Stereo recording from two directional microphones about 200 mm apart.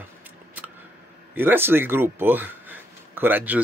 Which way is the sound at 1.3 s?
10° right (ahead or behind).